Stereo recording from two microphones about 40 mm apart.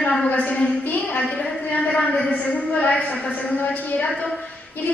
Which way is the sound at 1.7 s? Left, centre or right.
Left.